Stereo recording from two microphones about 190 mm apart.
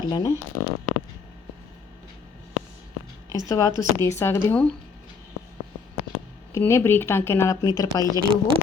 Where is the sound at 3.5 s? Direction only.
20° left (ahead or behind).